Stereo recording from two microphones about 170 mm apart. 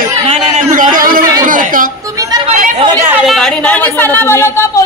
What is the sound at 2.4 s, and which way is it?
Chatter, 45° right (ahead or behind).